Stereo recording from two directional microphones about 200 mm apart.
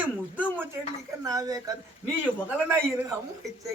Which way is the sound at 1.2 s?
15° right (ahead or behind).